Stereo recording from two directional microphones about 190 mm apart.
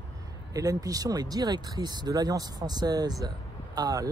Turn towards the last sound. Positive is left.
turn(degrees=-20)  # may be behind; listen again after turning